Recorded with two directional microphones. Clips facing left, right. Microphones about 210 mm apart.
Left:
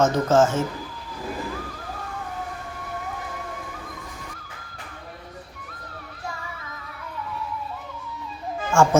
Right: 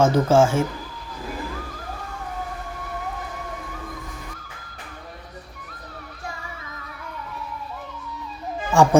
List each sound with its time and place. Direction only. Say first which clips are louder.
0.0 s speech: right 2 dB; 10° right (ahead or behind)
8.7 s speech: right 2 dB; 15° right (ahead or behind)